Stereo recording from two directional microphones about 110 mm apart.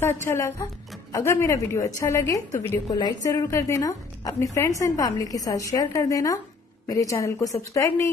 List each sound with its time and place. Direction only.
0.0 s a woman's voice: 25° left (ahead or behind)